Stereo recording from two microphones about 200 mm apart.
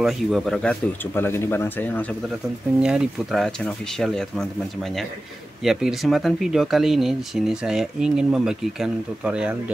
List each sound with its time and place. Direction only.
0.0 s speech: centre (ahead or behind)
2.8 s speech: centre (ahead or behind)
5.6 s speech: centre (ahead or behind)